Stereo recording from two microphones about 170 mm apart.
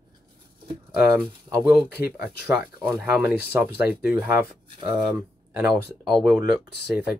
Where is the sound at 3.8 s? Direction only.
10° right (ahead or behind).